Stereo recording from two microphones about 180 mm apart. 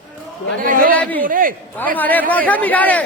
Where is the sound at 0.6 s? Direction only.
50° right (ahead or behind).